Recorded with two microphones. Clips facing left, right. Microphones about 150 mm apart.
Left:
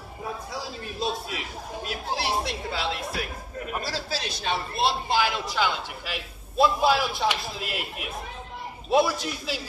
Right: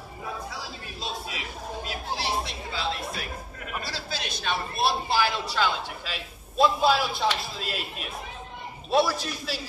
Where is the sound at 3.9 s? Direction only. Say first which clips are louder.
Left 3 dB; 35° left (ahead or behind); by 7.7 s 10° left (ahead or behind).